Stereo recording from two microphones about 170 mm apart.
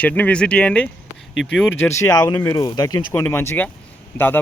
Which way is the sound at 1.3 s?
90° left.